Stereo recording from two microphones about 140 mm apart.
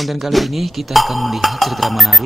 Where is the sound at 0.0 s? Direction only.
Centre (ahead or behind).